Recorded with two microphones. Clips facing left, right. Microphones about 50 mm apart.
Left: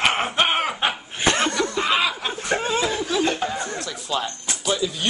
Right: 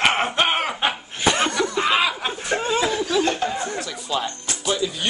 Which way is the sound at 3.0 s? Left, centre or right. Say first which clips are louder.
Right 1 dB; centre.